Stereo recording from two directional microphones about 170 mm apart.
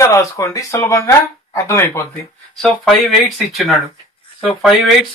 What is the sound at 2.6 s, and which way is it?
Speech, centre (ahead or behind).